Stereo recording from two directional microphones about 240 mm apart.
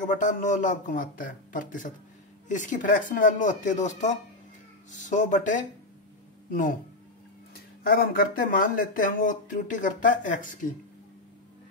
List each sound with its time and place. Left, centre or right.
0.0 s speech: left
7.8 s speech: left